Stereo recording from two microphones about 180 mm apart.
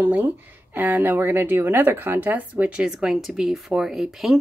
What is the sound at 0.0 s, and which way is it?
Speech, 10° right (ahead or behind).